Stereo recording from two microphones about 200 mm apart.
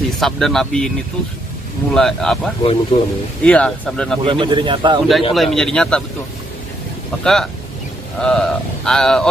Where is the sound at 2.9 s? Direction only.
25° left (ahead or behind).